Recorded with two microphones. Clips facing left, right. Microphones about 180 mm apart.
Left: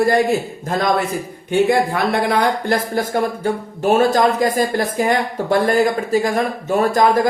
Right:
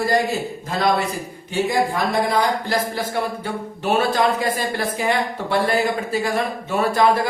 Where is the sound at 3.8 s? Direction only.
45° left (ahead or behind).